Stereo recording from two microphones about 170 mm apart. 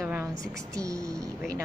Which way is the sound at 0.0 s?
10° right (ahead or behind).